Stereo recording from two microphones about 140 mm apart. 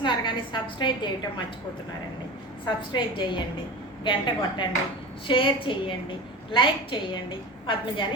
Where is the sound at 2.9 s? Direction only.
35° left (ahead or behind).